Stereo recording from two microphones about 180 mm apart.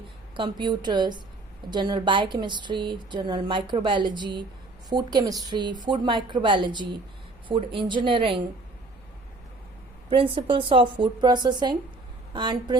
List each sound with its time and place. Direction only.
0.3 s a woman's voice: 25° right (ahead or behind)
10.1 s a woman's voice: 30° right (ahead or behind)